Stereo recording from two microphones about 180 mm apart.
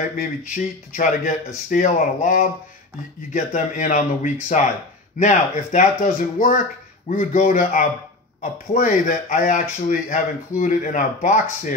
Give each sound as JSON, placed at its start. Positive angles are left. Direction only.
{"t": 0.2, "sound": "speech", "side_deg": 45}